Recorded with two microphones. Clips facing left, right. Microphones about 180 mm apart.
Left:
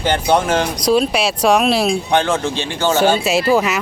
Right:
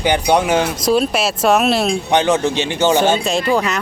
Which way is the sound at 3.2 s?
5° left (ahead or behind).